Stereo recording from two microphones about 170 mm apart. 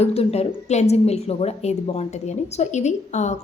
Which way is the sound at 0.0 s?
35° left (ahead or behind).